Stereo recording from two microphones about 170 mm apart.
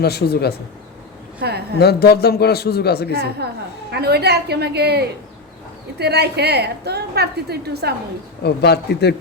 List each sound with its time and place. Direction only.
0.0 s a man's voice: 70° left (ahead or behind)
1.4 s speech: 70° right (ahead or behind)
1.8 s a man's voice: 70° left (ahead or behind)
3.2 s a woman's voice: 70° right (ahead or behind)
8.4 s a man's voice: 75° left (ahead or behind)